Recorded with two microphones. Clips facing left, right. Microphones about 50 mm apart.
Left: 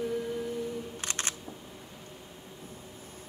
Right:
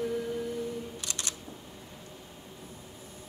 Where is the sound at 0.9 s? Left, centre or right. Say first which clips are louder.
Left 3 dB; left.